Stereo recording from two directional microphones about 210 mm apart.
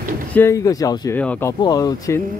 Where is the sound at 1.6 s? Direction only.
20° left (ahead or behind).